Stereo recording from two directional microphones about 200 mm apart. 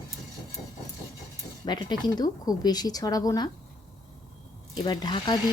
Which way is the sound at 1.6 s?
20° left (ahead or behind).